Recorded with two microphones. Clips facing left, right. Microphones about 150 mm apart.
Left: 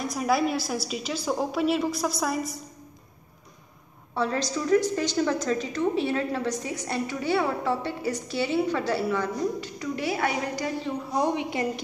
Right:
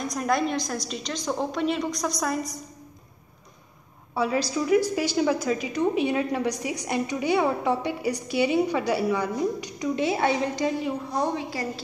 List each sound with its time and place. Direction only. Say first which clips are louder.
0.0 s a woman's voice: left 1 dB; 5° left (ahead or behind)
4.1 s a woman's voice: right 2 dB; 10° right (ahead or behind)
11.1 s a woman's voice: left 4 dB; 20° left (ahead or behind)